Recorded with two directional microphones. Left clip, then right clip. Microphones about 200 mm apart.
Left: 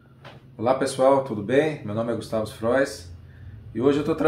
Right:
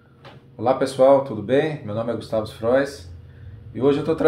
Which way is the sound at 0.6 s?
15° right (ahead or behind).